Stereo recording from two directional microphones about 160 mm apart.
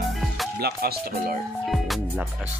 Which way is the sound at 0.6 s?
75° right (ahead or behind).